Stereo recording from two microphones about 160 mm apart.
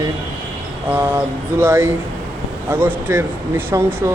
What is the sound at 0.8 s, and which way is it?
Speech, 10° right (ahead or behind).